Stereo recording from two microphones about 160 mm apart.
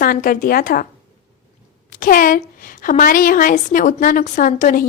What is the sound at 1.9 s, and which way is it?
A woman's voice, 60° left (ahead or behind).